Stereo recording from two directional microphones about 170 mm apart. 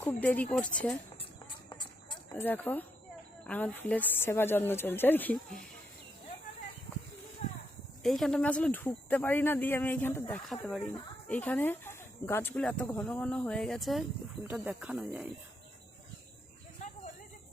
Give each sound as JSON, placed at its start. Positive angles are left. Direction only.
{"t": 0.0, "sound": "speech", "side_deg": 10}
{"t": 1.7, "sound": "a sound", "side_deg": 25}
{"t": 2.4, "sound": "speech", "side_deg": 10}
{"t": 8.0, "sound": "speech", "side_deg": 0}
{"t": 10.5, "sound": "speech", "side_deg": 0}